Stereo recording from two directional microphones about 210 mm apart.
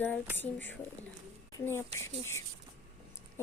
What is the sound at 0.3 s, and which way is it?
Speech, 10° left (ahead or behind).